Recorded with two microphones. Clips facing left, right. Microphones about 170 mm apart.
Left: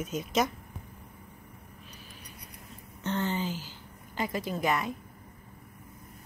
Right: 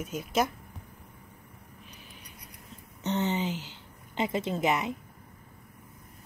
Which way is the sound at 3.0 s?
20° right (ahead or behind).